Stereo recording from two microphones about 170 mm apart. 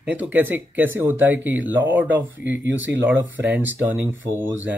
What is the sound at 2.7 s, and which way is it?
Speech, 90° right.